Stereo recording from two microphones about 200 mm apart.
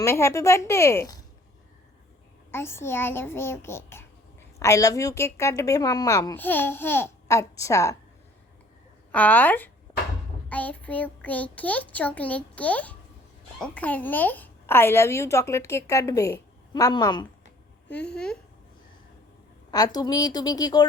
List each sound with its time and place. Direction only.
0.0 s a child's voice: 15° left (ahead or behind)
2.5 s a child's voice: 10° left (ahead or behind)
9.1 s a child's voice: 10° left (ahead or behind)
10.5 s child singing: 10° left (ahead or behind)
11.5 s a child's voice: 5° left (ahead or behind)
17.8 s speech: 5° left (ahead or behind)
19.7 s a woman's voice: 20° left (ahead or behind)